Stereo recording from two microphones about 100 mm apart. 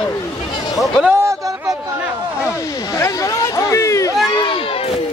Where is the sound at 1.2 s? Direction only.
30° right (ahead or behind).